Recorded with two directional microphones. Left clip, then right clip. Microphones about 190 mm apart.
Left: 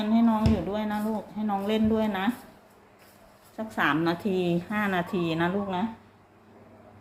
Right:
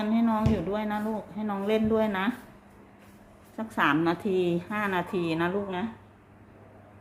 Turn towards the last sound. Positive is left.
turn(degrees=0)  # may be behind; listen again after turning